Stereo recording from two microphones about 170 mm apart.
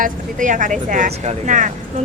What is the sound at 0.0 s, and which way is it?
Speech, 50° right (ahead or behind).